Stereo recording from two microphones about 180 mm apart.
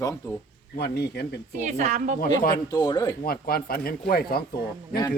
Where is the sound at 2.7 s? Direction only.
20° left (ahead or behind).